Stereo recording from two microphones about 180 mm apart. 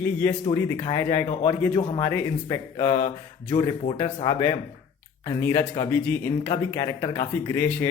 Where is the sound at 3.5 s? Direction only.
25° left (ahead or behind).